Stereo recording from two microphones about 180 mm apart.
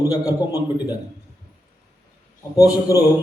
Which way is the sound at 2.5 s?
20° left (ahead or behind).